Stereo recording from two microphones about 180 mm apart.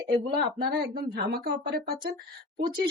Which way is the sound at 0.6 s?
60° right (ahead or behind).